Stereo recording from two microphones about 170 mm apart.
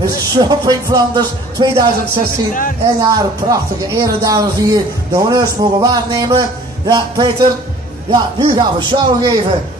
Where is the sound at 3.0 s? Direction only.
20° right (ahead or behind).